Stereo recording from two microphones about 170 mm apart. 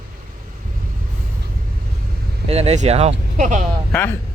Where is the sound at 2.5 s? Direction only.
40° right (ahead or behind).